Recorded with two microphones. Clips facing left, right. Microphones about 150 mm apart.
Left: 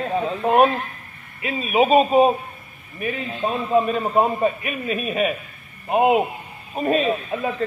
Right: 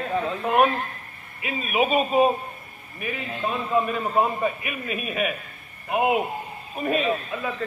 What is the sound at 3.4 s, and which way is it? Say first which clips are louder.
A man's voice: left 4 dB; 30° left (ahead or behind).